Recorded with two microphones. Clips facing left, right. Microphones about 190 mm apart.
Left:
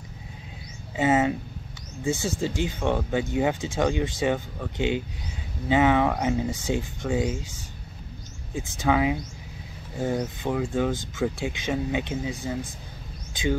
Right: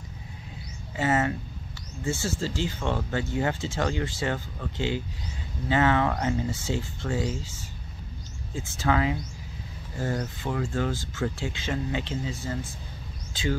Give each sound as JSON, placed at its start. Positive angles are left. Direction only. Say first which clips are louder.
{"t": 0.9, "sound": "speech", "louder": "left 4 dB", "side_deg": 20}
{"t": 8.5, "sound": "speech", "louder": "left 2 dB", "side_deg": 15}